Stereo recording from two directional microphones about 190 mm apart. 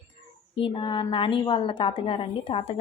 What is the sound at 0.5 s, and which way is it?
Speech, 25° left (ahead or behind).